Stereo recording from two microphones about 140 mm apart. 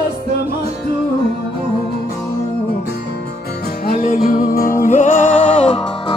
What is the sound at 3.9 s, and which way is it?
Music, 90° left.